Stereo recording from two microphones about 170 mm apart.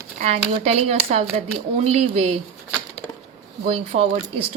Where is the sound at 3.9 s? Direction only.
35° right (ahead or behind).